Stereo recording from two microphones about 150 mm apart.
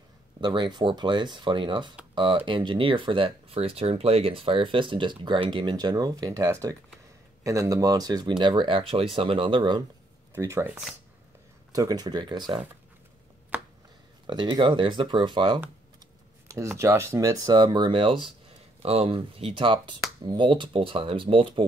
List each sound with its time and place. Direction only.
0.4 s speech: 30° right (ahead or behind)
10.3 s speech: 15° right (ahead or behind)
13.5 s a sound: 10° right (ahead or behind)
14.2 s speech: 30° right (ahead or behind)
16.4 s speech: 20° right (ahead or behind); by 21.6 s 35° right (ahead or behind)